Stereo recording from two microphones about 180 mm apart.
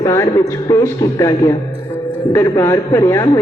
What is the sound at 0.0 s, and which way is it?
Speech, 20° left (ahead or behind).